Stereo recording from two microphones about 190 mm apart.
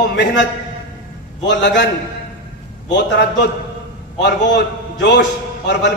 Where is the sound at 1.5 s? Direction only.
65° left (ahead or behind).